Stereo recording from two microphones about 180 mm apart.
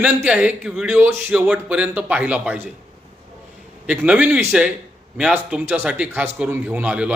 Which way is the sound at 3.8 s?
5° right (ahead or behind).